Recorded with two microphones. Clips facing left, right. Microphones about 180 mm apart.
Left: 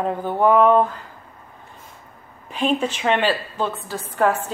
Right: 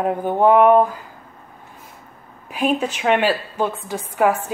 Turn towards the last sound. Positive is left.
turn(degrees=-10)  # may be behind; listen again after turning